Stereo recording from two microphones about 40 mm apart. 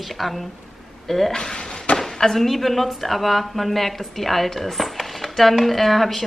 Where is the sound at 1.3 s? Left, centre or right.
Centre.